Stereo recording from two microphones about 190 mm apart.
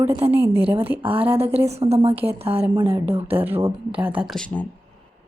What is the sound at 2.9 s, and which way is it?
Speech, 15° right (ahead or behind).